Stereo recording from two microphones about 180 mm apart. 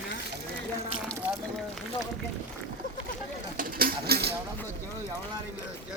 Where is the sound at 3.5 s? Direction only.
60° right (ahead or behind).